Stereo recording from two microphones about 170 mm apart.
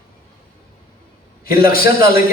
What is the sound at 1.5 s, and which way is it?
Speech, 60° left (ahead or behind).